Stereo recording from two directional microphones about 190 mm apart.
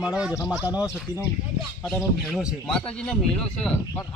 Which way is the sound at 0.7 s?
15° left (ahead or behind).